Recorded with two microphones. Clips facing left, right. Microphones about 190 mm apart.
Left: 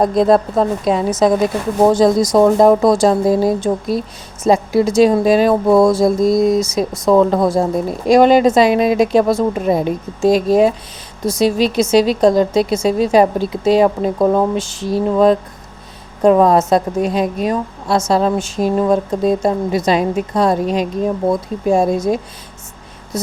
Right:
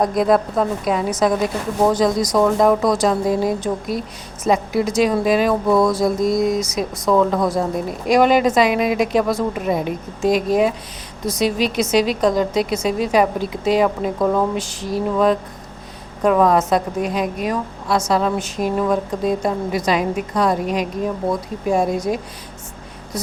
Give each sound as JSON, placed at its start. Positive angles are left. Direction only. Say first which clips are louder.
{"t": 0.0, "sound": "speech", "louder": "left 4 dB", "side_deg": 25}